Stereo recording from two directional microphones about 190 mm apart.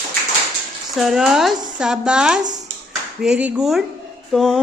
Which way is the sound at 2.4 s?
40° right (ahead or behind).